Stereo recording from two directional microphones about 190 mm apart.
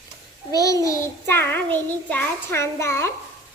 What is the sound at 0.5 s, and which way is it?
Child singing, 15° left (ahead or behind).